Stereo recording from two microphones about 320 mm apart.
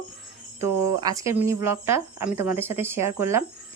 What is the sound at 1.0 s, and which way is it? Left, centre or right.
Speech, centre.